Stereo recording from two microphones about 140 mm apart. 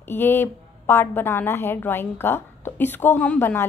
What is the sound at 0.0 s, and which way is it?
A woman's voice, 15° left (ahead or behind).